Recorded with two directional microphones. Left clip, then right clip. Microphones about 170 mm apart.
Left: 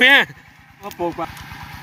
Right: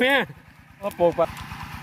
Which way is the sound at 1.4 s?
45° left (ahead or behind).